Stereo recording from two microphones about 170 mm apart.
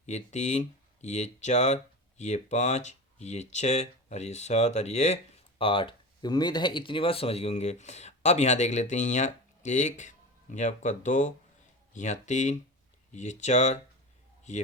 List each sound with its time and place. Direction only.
0.0 s speech: 45° left (ahead or behind)